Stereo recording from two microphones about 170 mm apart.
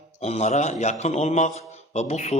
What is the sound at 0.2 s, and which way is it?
A man's voice, 40° left (ahead or behind).